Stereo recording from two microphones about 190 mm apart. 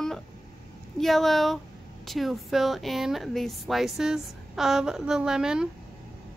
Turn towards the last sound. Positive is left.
turn(degrees=-5)  # may be behind; listen again after turning